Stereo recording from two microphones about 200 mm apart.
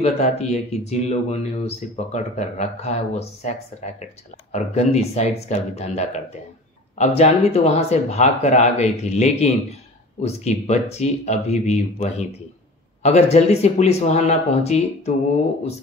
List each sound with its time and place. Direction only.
0.0 s speech: 35° left (ahead or behind)